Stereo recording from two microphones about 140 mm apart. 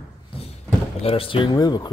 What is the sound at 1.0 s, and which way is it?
Speech, 45° left (ahead or behind).